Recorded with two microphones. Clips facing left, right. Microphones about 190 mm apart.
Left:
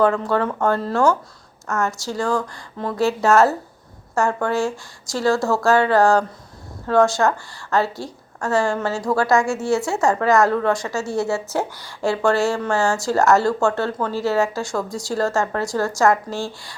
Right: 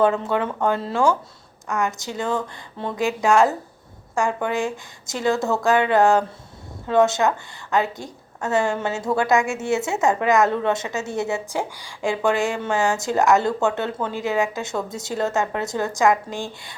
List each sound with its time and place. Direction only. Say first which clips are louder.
0.0 s a woman's voice: left 1 dB; 20° right (ahead or behind)
1.6 s a woman's voice: left 1 dB; 15° right (ahead or behind)